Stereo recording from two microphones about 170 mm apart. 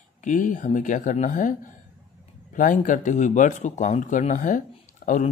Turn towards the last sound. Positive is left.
turn(degrees=50)  # may be behind; listen again after turning